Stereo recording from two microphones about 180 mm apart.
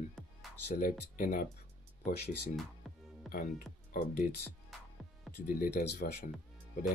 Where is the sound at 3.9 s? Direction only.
50° left (ahead or behind).